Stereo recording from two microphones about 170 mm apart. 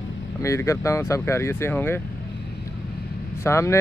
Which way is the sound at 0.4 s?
15° left (ahead or behind).